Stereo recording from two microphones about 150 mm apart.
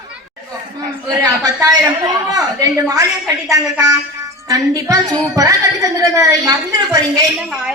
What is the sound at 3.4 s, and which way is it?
A woman's voice, 20° right (ahead or behind).